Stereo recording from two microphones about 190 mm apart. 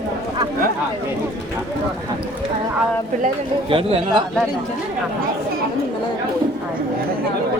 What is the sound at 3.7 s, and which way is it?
Speech, 30° right (ahead or behind).